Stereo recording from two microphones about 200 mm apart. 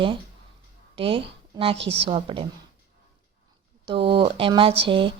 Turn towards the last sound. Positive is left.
turn(degrees=-25)  # may be behind; listen again after turning